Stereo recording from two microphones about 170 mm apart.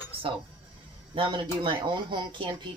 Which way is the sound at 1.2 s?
30° right (ahead or behind).